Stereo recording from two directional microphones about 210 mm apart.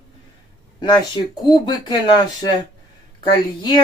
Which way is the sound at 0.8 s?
20° left (ahead or behind).